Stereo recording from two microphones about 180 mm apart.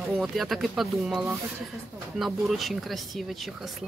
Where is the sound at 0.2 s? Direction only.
Centre (ahead or behind).